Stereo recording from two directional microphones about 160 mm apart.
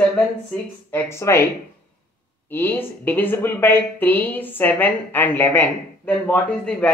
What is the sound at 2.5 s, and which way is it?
A woman's voice, 15° left (ahead or behind).